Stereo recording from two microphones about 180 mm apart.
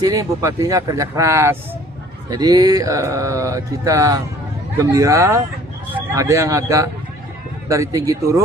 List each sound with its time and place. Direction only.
0.0 s speech: 20° right (ahead or behind)